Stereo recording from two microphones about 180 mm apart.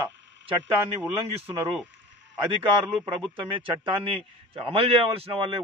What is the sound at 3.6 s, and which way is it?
A man's voice, 30° right (ahead or behind).